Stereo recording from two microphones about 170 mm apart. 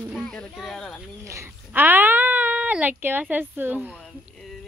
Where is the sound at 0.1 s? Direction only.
5° left (ahead or behind).